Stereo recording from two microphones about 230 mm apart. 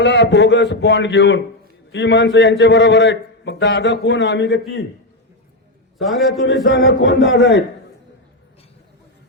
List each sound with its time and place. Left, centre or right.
0.0 s a man's voice: left
6.0 s a man's voice: centre
6.4 s a man's voice: left